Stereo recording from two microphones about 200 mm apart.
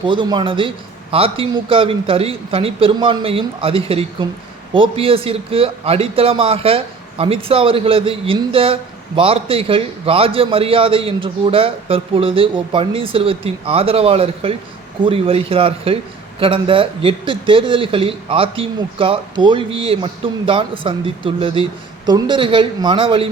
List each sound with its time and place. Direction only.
0.0 s a man's voice: 25° right (ahead or behind)